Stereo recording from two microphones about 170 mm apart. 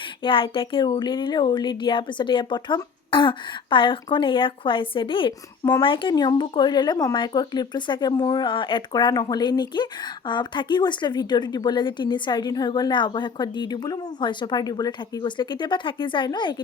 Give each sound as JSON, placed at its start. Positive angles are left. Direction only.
{"t": 0.2, "sound": "speech", "side_deg": 30}